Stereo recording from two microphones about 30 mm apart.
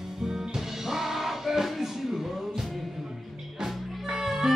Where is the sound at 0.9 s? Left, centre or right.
Centre.